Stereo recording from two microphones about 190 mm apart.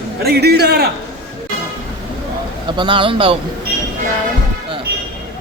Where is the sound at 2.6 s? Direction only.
25° right (ahead or behind).